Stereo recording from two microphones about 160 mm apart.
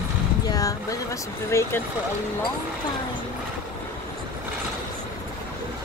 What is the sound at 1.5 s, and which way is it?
Speech, 15° left (ahead or behind).